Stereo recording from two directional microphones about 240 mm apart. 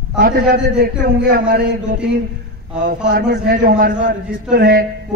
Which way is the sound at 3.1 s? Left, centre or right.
Right.